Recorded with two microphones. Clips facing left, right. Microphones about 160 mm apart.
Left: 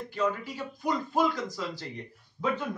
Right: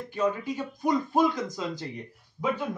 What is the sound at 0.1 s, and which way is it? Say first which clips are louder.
Speech: right 3 dB; 20° right (ahead or behind).